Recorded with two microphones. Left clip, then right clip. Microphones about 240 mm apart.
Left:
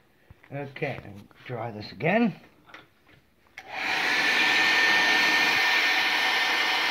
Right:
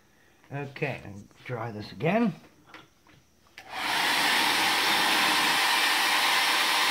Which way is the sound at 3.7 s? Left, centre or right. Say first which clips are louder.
Left 1 dB; centre.